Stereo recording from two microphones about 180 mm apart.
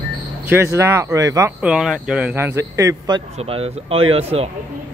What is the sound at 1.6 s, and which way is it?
Speech, 5° right (ahead or behind).